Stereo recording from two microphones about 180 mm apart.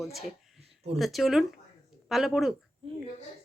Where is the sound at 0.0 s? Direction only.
Centre (ahead or behind).